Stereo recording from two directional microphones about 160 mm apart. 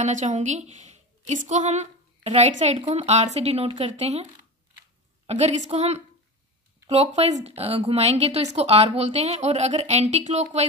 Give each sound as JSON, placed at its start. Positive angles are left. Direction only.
{"t": 0.0, "sound": "a woman's voice", "side_deg": -50}